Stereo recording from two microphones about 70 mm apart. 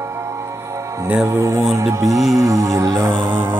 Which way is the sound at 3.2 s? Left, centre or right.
Right.